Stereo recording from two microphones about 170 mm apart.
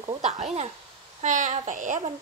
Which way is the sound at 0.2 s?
45° right (ahead or behind).